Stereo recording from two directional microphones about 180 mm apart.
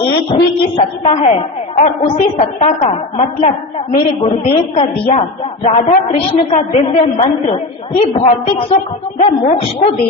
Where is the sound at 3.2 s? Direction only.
35° left (ahead or behind).